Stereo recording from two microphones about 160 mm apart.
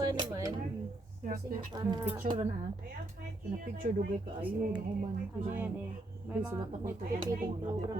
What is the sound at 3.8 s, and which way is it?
Speech, 55° right (ahead or behind).